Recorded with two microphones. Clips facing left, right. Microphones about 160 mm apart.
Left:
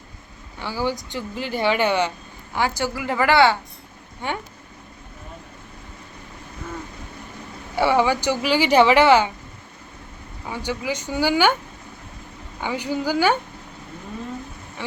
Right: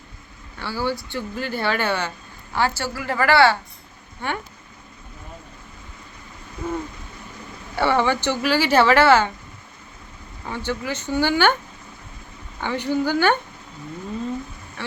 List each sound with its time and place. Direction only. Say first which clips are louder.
0.6 s speech: even; 15° left (ahead or behind)
7.8 s speech: left 1 dB; 10° left (ahead or behind)
10.5 s speech: even; 10° left (ahead or behind)
12.5 s speech: right 2 dB; 10° left (ahead or behind)
14.8 s speech: left 1 dB; 15° left (ahead or behind)